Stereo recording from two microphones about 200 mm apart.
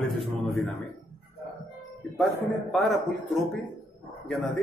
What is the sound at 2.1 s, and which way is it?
Speech, centre (ahead or behind).